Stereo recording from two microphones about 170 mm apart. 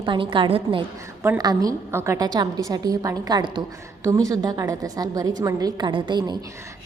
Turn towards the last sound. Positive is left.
turn(degrees=-25)  # may be behind; listen again after turning